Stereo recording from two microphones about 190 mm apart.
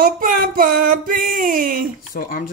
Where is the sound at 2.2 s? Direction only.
50° left (ahead or behind).